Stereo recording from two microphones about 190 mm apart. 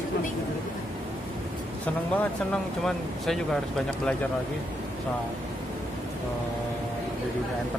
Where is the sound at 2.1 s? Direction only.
5° left (ahead or behind).